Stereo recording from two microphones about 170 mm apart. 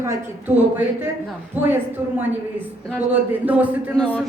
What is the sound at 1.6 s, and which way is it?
A woman's voice, 10° right (ahead or behind).